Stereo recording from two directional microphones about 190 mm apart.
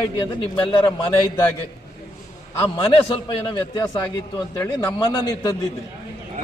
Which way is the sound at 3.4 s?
20° left (ahead or behind).